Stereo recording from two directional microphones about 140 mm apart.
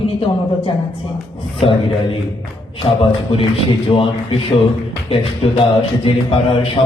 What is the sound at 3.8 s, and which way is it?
Speech, 40° left (ahead or behind).